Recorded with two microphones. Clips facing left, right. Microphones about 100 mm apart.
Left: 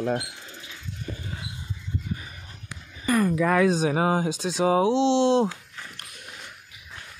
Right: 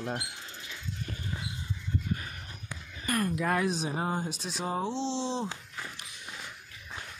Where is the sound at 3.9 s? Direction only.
90° left; by 5.4 s 70° left (ahead or behind).